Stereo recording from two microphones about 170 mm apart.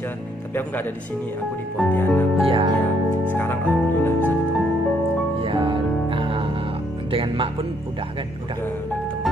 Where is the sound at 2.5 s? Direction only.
30° right (ahead or behind).